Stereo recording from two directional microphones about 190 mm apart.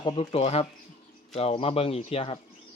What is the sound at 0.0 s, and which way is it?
Speech, 30° left (ahead or behind).